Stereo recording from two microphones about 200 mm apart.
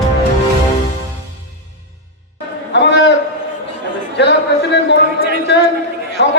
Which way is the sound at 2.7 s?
60° left (ahead or behind).